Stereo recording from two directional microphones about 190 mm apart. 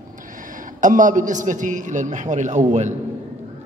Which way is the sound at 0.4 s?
45° right (ahead or behind).